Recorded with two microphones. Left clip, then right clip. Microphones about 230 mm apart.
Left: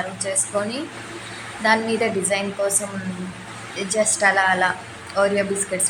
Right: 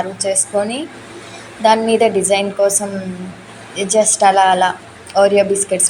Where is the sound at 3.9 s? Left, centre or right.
Centre.